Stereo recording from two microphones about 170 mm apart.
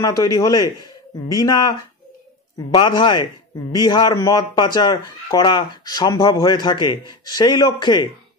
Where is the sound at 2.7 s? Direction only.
25° left (ahead or behind).